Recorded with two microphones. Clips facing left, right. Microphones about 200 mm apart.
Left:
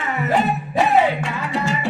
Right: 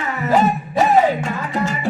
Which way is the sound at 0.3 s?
40° right (ahead or behind).